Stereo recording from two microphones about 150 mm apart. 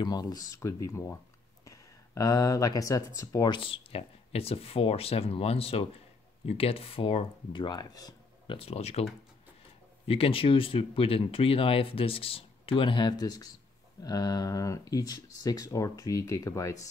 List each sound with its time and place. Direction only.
0.0 s speech: 25° left (ahead or behind)
8.5 s speech: 45° left (ahead or behind)
10.0 s speech: 40° left (ahead or behind); by 16.9 s 20° left (ahead or behind)